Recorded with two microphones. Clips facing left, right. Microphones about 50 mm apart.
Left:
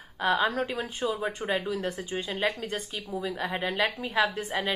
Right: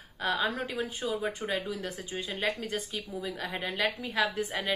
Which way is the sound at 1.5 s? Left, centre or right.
Centre.